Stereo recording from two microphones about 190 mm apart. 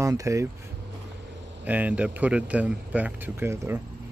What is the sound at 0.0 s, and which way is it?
Speech, 15° right (ahead or behind).